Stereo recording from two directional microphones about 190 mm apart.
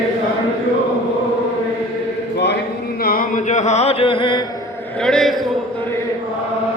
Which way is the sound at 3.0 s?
50° left (ahead or behind).